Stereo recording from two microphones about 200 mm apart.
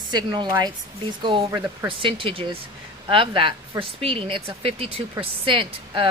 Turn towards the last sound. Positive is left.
turn(degrees=-25)  # may be behind; listen again after turning